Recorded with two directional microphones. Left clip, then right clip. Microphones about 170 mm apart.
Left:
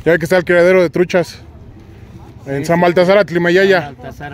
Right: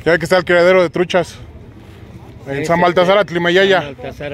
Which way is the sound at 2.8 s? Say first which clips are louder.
Left 2 dB; 50° left (ahead or behind).